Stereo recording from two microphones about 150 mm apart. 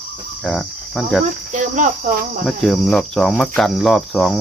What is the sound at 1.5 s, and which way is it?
Speech, 60° right (ahead or behind).